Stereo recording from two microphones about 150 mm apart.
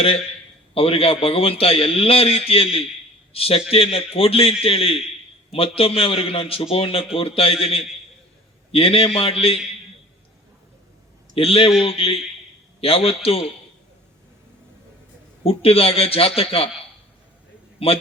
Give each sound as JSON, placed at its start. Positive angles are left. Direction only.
{"t": 0.7, "sound": "a man's voice", "side_deg": 40}
{"t": 11.3, "sound": "a man's voice", "side_deg": 40}
{"t": 15.4, "sound": "a man's voice", "side_deg": 40}